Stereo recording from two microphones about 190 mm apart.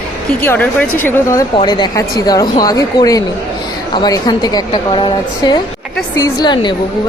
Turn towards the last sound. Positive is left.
turn(degrees=25)  # may be behind; listen again after turning